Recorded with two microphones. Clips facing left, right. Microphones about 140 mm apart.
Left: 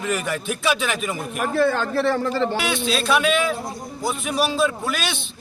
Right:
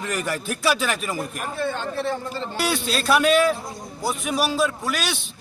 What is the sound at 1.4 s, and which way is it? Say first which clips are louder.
A man's voice: left 12 dB; 90° left.